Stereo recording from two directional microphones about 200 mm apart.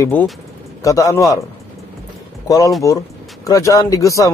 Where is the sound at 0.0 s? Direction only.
10° left (ahead or behind).